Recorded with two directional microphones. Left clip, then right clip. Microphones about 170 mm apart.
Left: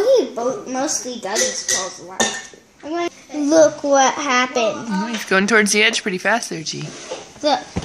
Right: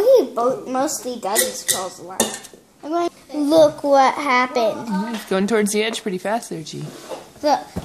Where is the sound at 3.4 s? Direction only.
25° left (ahead or behind).